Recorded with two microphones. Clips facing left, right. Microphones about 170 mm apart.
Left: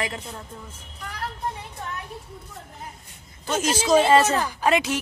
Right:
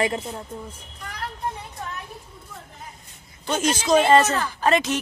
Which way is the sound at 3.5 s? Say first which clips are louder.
Even; 5° left (ahead or behind).